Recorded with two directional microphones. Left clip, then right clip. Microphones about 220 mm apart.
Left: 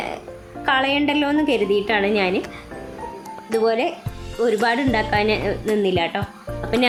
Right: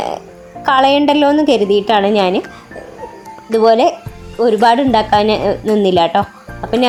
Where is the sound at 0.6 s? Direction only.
25° right (ahead or behind).